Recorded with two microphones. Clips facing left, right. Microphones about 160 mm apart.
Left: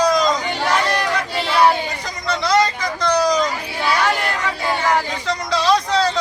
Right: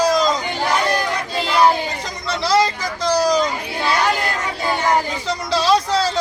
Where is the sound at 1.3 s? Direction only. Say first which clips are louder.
Right 1 dB; 15° right (ahead or behind).